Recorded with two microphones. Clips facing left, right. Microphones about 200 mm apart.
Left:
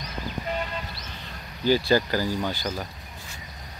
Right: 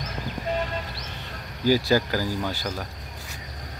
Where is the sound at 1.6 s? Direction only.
5° right (ahead or behind).